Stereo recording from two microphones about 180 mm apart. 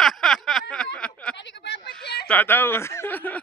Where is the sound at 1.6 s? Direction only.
65° left (ahead or behind).